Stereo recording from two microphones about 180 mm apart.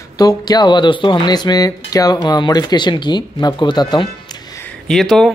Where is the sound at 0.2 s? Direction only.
20° left (ahead or behind).